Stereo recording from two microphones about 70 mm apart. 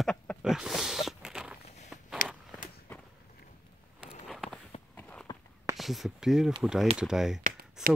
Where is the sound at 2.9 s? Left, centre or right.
Left.